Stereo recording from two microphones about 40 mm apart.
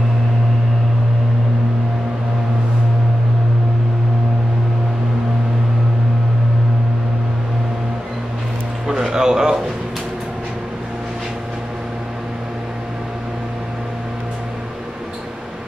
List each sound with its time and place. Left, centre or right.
8.8 s music: centre